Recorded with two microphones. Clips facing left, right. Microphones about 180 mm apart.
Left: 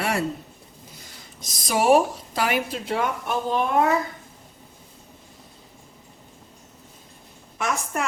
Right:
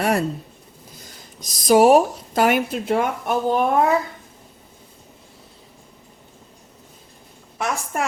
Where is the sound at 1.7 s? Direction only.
40° right (ahead or behind).